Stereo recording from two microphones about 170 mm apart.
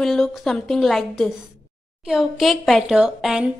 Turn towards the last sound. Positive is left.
turn(degrees=-5)  # may be behind; listen again after turning